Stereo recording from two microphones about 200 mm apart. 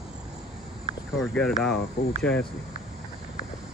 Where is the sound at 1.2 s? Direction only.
5° left (ahead or behind).